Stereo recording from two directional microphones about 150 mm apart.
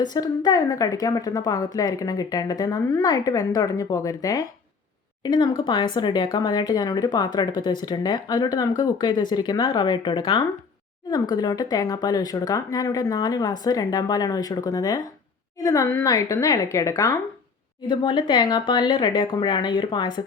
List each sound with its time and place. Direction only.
0.0 s speech: 25° left (ahead or behind)